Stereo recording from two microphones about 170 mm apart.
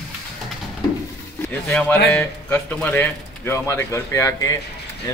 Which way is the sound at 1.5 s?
5° left (ahead or behind).